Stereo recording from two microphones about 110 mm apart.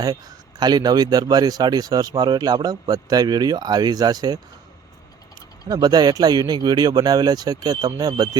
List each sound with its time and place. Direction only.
0.6 s speech: 40° right (ahead or behind)
5.6 s speech: 35° right (ahead or behind)